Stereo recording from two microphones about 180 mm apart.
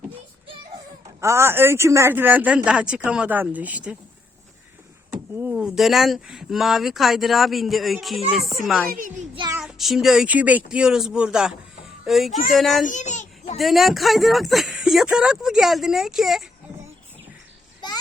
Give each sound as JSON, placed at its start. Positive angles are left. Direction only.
{"t": 1.2, "sound": "speech", "side_deg": -15}
{"t": 5.4, "sound": "speech", "side_deg": -5}
{"t": 8.9, "sound": "a child's voice", "side_deg": -45}
{"t": 9.5, "sound": "speech", "side_deg": -5}
{"t": 12.8, "sound": "a sound", "side_deg": 45}
{"t": 13.6, "sound": "speech", "side_deg": 0}